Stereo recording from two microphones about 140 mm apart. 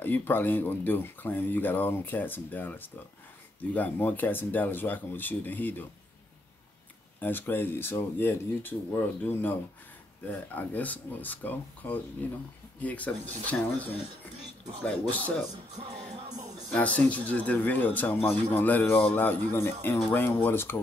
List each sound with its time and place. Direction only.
0.0 s speech: 15° left (ahead or behind)
7.2 s speech: 15° left (ahead or behind)
14.9 s speech: 10° left (ahead or behind)
16.7 s speech: 10° left (ahead or behind)